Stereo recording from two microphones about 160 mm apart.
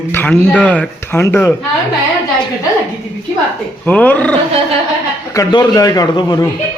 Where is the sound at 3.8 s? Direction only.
10° left (ahead or behind).